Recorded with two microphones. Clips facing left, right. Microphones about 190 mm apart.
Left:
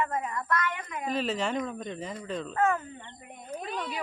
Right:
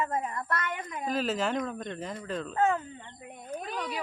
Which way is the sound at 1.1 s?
Centre (ahead or behind).